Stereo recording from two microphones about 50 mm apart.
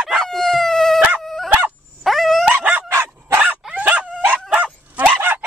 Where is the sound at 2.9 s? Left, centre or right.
Right.